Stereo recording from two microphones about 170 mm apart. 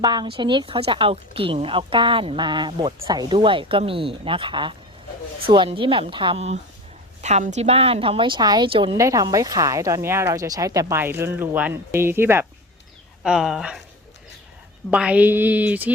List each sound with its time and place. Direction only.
0.0 s a woman's voice: 25° right (ahead or behind)
9.0 s speech: 20° right (ahead or behind)
13.2 s speech: 5° right (ahead or behind)
14.8 s speech: 5° right (ahead or behind)